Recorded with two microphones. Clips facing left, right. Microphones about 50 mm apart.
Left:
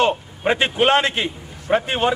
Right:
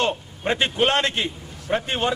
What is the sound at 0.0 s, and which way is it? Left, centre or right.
A man's voice, centre.